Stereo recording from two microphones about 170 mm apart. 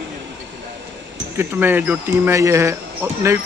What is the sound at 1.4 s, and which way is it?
Speech, 10° right (ahead or behind).